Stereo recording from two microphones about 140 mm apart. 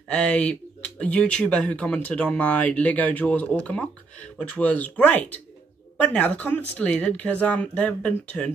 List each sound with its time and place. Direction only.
0.1 s speech: 10° left (ahead or behind)